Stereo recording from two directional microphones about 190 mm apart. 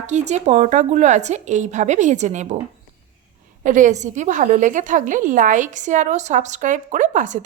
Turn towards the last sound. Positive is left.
turn(degrees=-40)  # may be behind; listen again after turning